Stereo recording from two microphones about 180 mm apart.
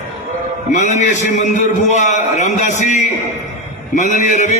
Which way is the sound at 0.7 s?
40° left (ahead or behind).